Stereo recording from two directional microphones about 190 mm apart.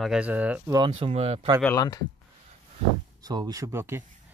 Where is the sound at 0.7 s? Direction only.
25° right (ahead or behind).